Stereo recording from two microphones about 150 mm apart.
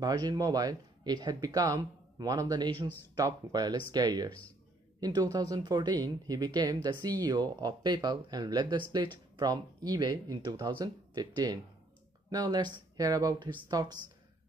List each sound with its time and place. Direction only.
0.0 s speech: 25° right (ahead or behind)